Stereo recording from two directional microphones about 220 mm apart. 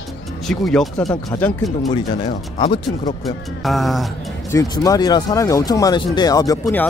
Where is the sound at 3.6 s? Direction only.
Centre (ahead or behind).